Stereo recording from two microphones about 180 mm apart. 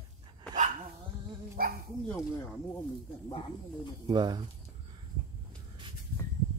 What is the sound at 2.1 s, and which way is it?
Speech, 15° left (ahead or behind).